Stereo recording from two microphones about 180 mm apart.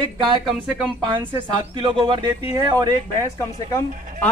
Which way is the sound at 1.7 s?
30° right (ahead or behind).